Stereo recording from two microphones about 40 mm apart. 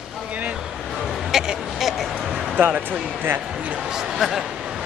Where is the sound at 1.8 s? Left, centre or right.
Centre.